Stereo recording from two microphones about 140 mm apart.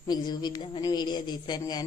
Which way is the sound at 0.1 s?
30° left (ahead or behind).